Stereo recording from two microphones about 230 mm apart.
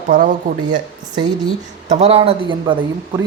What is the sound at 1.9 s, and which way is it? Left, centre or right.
Speech, right.